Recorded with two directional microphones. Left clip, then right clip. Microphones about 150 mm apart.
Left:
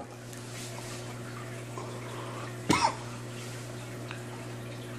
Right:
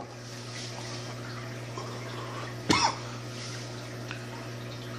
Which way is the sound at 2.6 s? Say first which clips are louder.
Right 1 dB; 5° left (ahead or behind).